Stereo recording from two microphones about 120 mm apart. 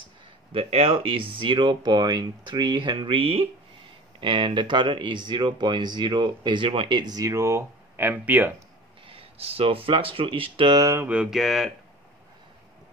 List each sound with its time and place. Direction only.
0.5 s speech: 55° right (ahead or behind); by 8.5 s 15° right (ahead or behind)
9.0 s speech: 50° right (ahead or behind)
11.1 s a sound: 5° right (ahead or behind)